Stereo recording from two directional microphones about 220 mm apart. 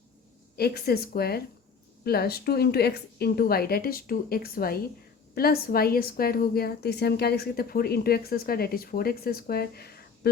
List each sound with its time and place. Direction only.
0.5 s a woman's voice: 45° left (ahead or behind)